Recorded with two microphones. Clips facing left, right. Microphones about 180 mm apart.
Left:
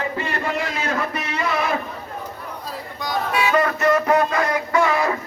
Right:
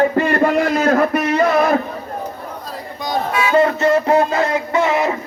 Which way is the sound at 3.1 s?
30° right (ahead or behind).